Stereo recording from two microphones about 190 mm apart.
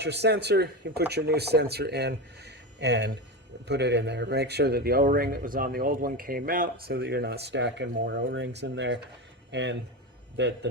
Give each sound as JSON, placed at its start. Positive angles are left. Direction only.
{"t": 0.0, "sound": "speech", "side_deg": -65}